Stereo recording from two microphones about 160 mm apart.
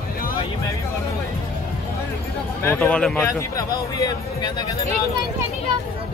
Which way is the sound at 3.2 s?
20° left (ahead or behind).